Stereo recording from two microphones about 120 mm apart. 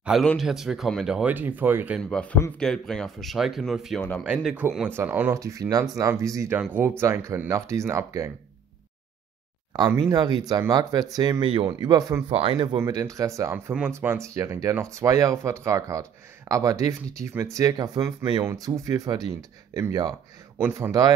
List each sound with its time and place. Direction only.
0.2 s speech: centre (ahead or behind)
1.3 s speech: 15° right (ahead or behind)
2.0 s speech: 10° left (ahead or behind); by 5.4 s 15° right (ahead or behind)
5.4 s speech: 30° right (ahead or behind)
9.7 s speech: 30° right (ahead or behind)
11.4 s speech: 45° right (ahead or behind)
11.9 s speech: 30° right (ahead or behind)
12.3 s speech: 50° right (ahead or behind)
12.8 s speech: 25° right (ahead or behind)
20.6 s speech: 20° right (ahead or behind)